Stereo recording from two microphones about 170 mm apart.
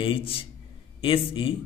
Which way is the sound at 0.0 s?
30° left (ahead or behind).